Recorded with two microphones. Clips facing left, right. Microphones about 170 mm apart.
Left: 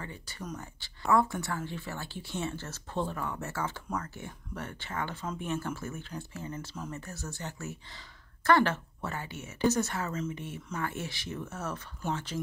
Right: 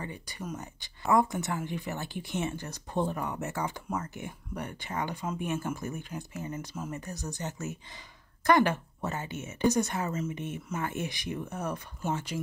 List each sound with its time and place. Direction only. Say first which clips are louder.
0.0 s speech: right 3 dB; 15° right (ahead or behind)